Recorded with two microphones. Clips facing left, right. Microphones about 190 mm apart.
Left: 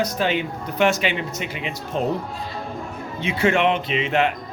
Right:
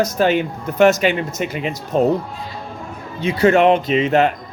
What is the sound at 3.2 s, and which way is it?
Speech, 40° right (ahead or behind).